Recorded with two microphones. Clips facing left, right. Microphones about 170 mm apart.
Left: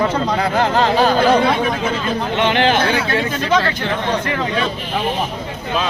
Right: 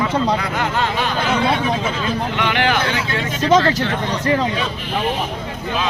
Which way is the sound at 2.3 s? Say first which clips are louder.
Left 5 dB; 25° left (ahead or behind).